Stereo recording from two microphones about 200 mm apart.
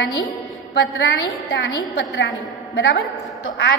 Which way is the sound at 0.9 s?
65° left (ahead or behind).